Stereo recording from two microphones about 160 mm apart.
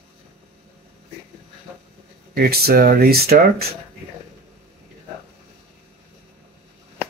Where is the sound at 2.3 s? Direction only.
75° right (ahead or behind).